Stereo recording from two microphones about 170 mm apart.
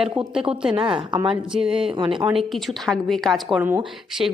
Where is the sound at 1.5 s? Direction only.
5° right (ahead or behind).